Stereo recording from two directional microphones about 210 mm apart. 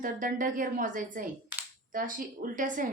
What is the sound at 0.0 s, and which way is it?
Speech, 40° right (ahead or behind).